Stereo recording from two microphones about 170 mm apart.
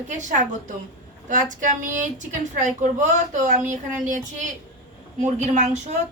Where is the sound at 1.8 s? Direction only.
50° right (ahead or behind).